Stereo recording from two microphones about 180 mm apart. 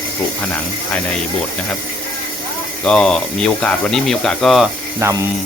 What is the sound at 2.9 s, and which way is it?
Speech, 5° left (ahead or behind).